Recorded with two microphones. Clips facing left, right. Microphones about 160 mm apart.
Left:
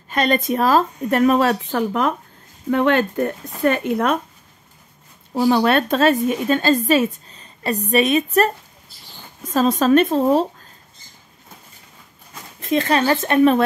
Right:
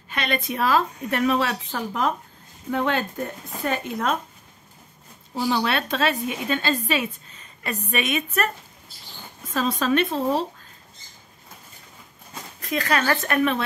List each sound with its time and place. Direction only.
0.1 s speech: 40° left (ahead or behind); by 4.2 s 60° left (ahead or behind)
5.3 s a woman's voice: 55° left (ahead or behind)
12.5 s speech: 25° left (ahead or behind)